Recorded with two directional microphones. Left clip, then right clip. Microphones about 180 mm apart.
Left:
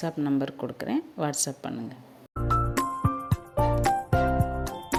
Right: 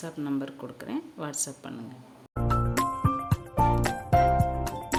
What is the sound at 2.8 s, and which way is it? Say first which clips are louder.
Music: right 1 dB; centre (ahead or behind).